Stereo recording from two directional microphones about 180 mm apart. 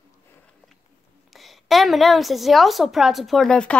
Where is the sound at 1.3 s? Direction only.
Centre (ahead or behind).